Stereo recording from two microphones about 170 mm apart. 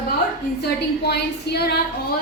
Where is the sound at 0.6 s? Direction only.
70° left (ahead or behind).